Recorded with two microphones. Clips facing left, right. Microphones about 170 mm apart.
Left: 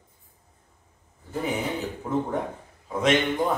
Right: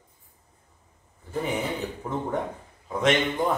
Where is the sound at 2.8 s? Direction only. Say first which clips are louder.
Left 1 dB; centre (ahead or behind).